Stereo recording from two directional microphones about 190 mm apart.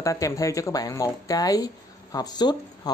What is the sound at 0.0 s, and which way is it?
Speech, 15° left (ahead or behind).